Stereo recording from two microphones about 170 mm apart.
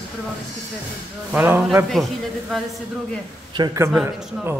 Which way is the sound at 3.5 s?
20° right (ahead or behind).